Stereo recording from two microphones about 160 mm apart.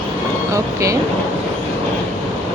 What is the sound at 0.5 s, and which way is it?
Speech, 20° right (ahead or behind).